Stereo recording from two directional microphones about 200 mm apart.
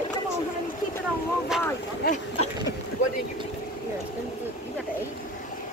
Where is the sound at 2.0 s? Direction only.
40° left (ahead or behind).